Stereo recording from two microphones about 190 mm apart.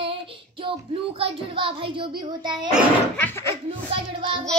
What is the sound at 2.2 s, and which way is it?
Speech, 25° right (ahead or behind).